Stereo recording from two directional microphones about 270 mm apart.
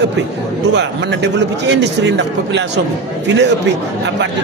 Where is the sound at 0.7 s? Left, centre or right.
Right.